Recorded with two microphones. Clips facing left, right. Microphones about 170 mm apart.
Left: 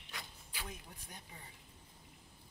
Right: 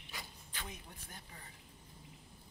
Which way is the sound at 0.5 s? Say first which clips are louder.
Left 1 dB; 10° left (ahead or behind).